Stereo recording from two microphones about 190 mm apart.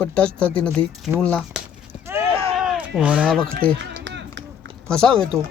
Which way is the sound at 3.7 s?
70° right (ahead or behind).